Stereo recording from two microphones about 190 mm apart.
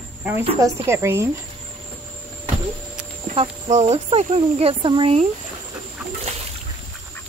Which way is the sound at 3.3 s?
30° right (ahead or behind).